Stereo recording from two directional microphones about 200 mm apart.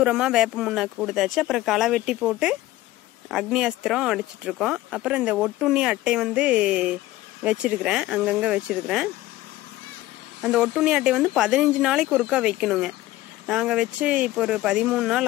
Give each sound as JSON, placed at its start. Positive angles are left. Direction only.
{"t": 0.0, "sound": "speech", "side_deg": -5}
{"t": 10.4, "sound": "speech", "side_deg": -5}